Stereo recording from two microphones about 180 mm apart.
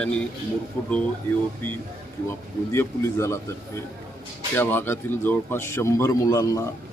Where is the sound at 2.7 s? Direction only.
15° left (ahead or behind).